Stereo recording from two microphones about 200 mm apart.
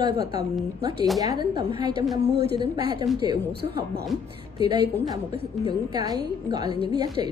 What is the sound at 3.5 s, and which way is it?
Speech, 55° right (ahead or behind).